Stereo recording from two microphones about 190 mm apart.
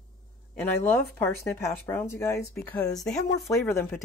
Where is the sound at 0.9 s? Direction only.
10° left (ahead or behind).